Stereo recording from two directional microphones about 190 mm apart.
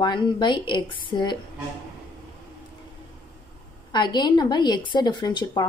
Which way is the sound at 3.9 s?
25° left (ahead or behind).